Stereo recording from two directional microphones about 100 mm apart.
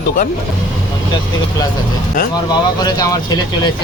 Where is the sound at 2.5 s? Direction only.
40° left (ahead or behind).